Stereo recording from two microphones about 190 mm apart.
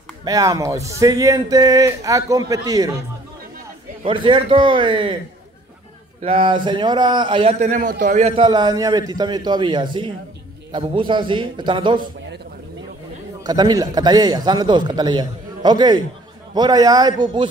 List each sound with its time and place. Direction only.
0.2 s speech: 20° right (ahead or behind)
4.0 s a man's voice: 25° right (ahead or behind)
6.2 s a man's voice: 25° right (ahead or behind)
7.6 s a man's voice: 40° right (ahead or behind); by 12.0 s 25° right (ahead or behind)
13.5 s a man's voice: 20° right (ahead or behind)